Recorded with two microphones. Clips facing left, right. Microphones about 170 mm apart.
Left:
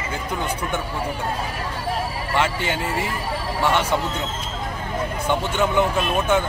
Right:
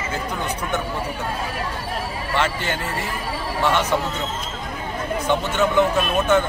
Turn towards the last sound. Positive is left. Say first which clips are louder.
# right 2 dB
turn(degrees=10)  # may be behind; listen again after turning